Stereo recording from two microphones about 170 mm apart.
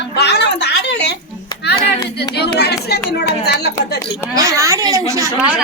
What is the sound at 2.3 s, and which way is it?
Speech, 75° left (ahead or behind).